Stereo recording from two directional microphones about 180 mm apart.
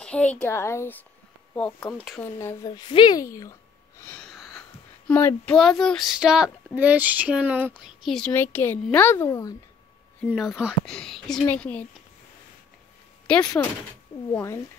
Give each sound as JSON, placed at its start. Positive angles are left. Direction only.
{"t": 0.0, "sound": "a child's voice", "side_deg": 5}
{"t": 4.0, "sound": "speech", "side_deg": 5}
{"t": 10.3, "sound": "a woman's voice", "side_deg": 0}
{"t": 13.6, "sound": "a child's voice", "side_deg": 15}